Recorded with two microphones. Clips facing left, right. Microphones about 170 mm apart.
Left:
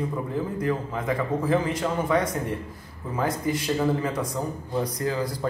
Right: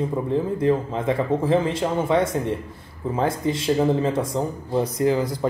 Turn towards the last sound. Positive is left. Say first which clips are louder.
# right 6 dB
turn(degrees=-25)  # may be behind; listen again after turning